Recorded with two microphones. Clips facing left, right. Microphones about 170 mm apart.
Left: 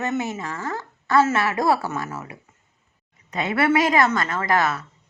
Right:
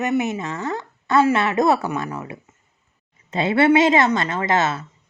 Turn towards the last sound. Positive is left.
turn(degrees=-25)  # may be behind; listen again after turning